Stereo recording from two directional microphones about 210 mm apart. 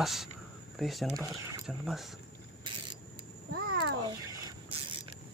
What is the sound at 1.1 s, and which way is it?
Speech, 15° right (ahead or behind).